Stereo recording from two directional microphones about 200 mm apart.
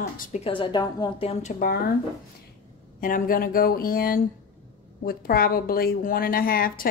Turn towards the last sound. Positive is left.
turn(degrees=45)  # may be behind; listen again after turning